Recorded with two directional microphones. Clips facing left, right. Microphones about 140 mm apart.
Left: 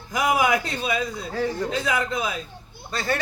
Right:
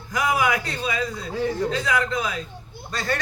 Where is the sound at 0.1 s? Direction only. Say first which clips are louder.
Left 1 dB; 10° left (ahead or behind).